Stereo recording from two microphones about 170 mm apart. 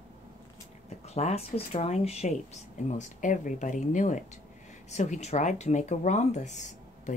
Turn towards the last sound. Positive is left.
turn(degrees=45)  # may be behind; listen again after turning